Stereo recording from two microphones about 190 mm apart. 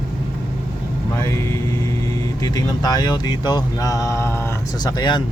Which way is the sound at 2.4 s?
20° left (ahead or behind).